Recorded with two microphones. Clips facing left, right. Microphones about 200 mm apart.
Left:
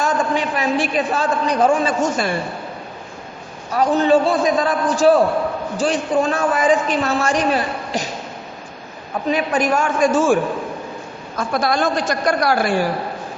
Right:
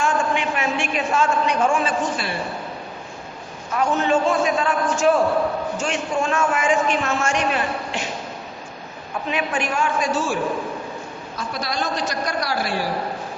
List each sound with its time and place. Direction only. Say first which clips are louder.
0.0 s a woman's voice: left 2 dB; 35° left (ahead or behind)
3.7 s a woman's voice: left 5 dB; 35° left (ahead or behind)
9.3 s a woman's voice: left 6 dB; 40° left (ahead or behind)
11.3 s a woman's voice: left 8 dB; 50° left (ahead or behind)